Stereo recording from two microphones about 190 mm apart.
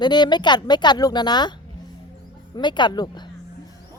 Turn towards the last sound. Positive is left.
turn(degrees=20)  # may be behind; listen again after turning